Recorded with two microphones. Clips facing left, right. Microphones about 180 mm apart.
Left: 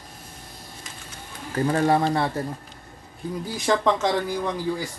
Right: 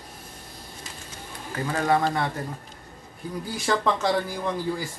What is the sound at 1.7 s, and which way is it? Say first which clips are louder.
Speech: left 1 dB; 30° left (ahead or behind).